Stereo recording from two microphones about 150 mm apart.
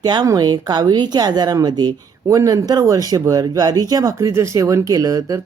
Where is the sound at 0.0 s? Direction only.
30° right (ahead or behind).